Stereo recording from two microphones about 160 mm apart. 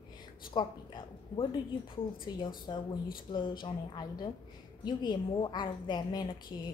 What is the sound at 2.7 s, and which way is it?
A woman's voice, 25° left (ahead or behind).